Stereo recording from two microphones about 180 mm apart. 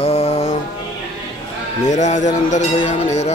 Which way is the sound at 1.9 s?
40° left (ahead or behind).